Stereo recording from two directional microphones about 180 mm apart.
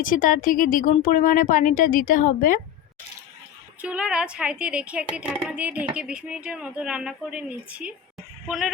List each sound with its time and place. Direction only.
0.0 s speech: 50° left (ahead or behind)
3.8 s a woman's voice: 5° right (ahead or behind)